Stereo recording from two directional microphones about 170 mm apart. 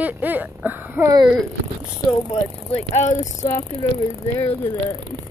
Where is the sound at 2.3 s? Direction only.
35° left (ahead or behind).